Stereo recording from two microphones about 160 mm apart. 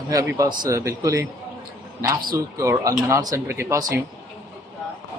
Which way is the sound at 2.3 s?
20° right (ahead or behind).